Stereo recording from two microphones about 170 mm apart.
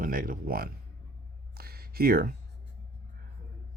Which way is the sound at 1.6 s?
65° right (ahead or behind).